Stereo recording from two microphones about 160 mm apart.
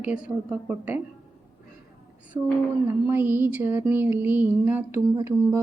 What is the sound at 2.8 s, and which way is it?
A woman's voice, 15° right (ahead or behind).